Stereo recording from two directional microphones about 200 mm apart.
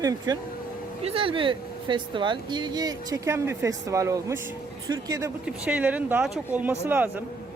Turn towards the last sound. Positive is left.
turn(degrees=-10)  # may be behind; listen again after turning